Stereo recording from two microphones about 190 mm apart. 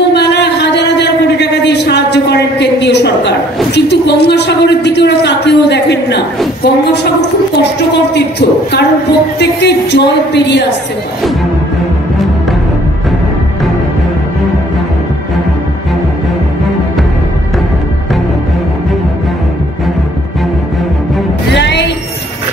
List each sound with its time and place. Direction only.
0.1 s a sound: 60° left (ahead or behind)
6.6 s a woman's voice: 60° left (ahead or behind)
21.5 s music: 65° left (ahead or behind)